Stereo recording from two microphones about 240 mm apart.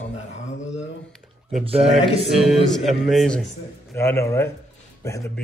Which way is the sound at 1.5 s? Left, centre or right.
Right.